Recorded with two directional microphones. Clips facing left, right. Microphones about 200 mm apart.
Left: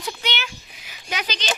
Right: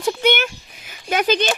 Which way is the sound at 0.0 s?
50° right (ahead or behind).